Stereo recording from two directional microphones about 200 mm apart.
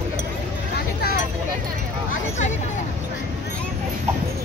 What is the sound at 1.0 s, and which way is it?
Speech, 50° left (ahead or behind).